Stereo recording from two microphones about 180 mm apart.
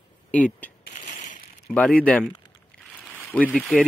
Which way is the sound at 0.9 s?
40° left (ahead or behind).